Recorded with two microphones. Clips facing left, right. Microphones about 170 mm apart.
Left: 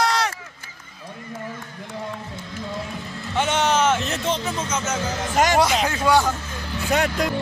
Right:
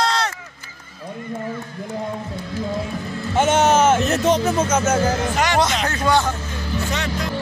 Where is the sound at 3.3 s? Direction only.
45° right (ahead or behind).